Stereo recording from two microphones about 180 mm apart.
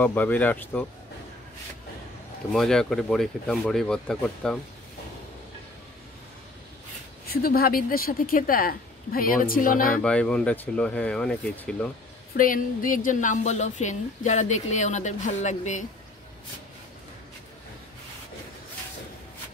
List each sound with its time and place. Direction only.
0.0 s speech: 10° left (ahead or behind)
2.5 s speech: centre (ahead or behind)
7.2 s a woman's voice: 55° left (ahead or behind)
9.9 s speech: 5° left (ahead or behind)
12.4 s a woman's voice: 50° left (ahead or behind)